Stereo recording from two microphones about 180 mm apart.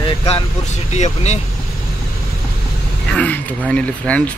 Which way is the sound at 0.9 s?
40° left (ahead or behind).